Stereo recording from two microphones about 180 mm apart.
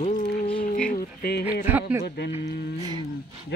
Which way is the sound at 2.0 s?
65° left (ahead or behind).